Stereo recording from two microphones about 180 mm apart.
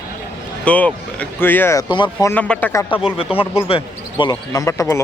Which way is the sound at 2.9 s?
30° left (ahead or behind).